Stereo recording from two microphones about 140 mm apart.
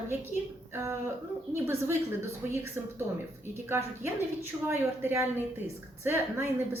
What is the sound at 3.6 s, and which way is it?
A woman's voice, 15° right (ahead or behind).